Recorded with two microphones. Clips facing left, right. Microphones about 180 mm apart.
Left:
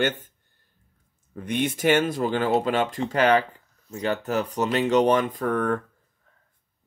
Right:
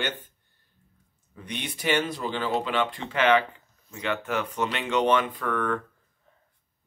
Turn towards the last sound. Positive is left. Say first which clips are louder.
# left 4 dB
turn(degrees=40)  # may be behind; listen again after turning